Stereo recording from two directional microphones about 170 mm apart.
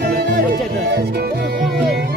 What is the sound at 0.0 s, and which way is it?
Music, 65° right (ahead or behind).